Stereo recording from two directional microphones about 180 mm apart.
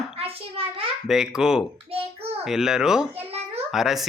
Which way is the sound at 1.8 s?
35° right (ahead or behind).